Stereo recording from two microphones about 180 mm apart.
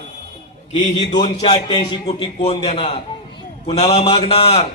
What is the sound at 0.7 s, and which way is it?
A man's voice, 25° left (ahead or behind).